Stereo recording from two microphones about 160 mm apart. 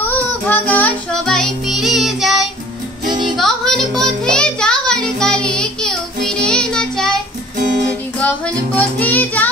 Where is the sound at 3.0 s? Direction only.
30° right (ahead or behind).